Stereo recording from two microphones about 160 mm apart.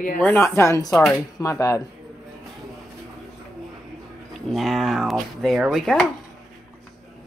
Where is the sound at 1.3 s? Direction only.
20° left (ahead or behind).